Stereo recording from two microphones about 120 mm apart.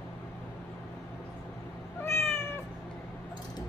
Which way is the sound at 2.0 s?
20° left (ahead or behind).